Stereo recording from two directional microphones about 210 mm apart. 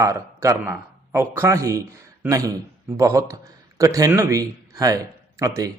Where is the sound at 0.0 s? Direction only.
15° right (ahead or behind).